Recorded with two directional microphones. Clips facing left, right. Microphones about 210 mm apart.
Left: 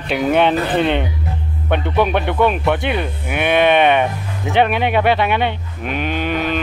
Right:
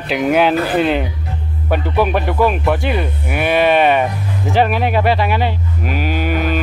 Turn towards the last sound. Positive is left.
turn(degrees=-5)  # may be behind; listen again after turning